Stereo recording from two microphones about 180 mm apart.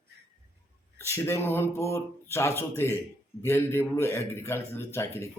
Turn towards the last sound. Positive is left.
turn(degrees=15)  # may be behind; listen again after turning